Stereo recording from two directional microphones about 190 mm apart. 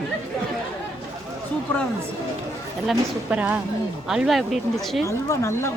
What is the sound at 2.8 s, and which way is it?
Speech, 5° right (ahead or behind).